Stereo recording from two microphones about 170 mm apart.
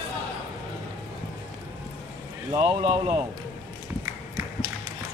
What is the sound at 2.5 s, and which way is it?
Speech, 30° right (ahead or behind).